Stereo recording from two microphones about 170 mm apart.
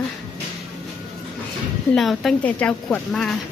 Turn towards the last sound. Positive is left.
turn(degrees=5)  # may be behind; listen again after turning